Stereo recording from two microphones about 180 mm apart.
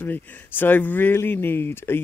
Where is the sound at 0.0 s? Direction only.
10° left (ahead or behind).